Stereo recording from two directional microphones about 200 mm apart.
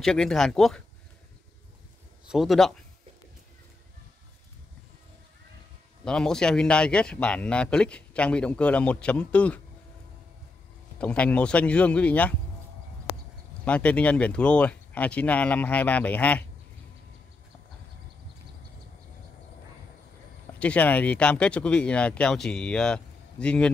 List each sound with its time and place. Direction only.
0.0 s speech: centre (ahead or behind)
2.2 s speech: centre (ahead or behind)
6.0 s speech: 5° left (ahead or behind)
11.0 s speech: 5° left (ahead or behind)
13.7 s speech: 5° left (ahead or behind)
20.5 s speech: 5° left (ahead or behind)